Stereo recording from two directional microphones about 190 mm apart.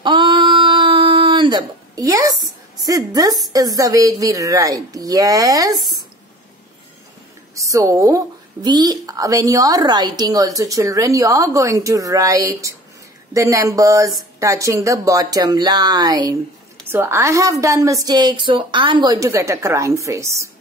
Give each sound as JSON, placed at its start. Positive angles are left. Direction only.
{"t": 0.0, "sound": "a sound", "side_deg": -25}
{"t": 3.5, "sound": "a woman's voice", "side_deg": -20}
{"t": 7.5, "sound": "a woman's voice", "side_deg": -15}